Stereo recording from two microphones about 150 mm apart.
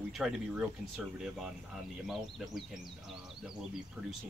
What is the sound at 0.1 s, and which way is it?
Speech, centre (ahead or behind).